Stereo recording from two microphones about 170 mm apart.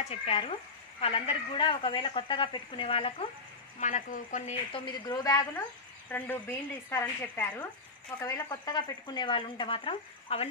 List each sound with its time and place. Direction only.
0.0 s a woman's voice: 35° left (ahead or behind)
3.8 s speech: 50° left (ahead or behind)
4.8 s speech: 25° left (ahead or behind)
6.0 s a woman's voice: 10° left (ahead or behind); by 10.5 s 35° left (ahead or behind)